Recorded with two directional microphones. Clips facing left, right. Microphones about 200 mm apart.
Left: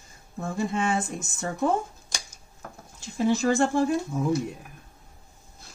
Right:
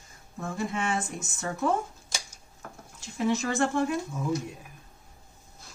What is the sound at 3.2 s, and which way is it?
Speech, 30° left (ahead or behind).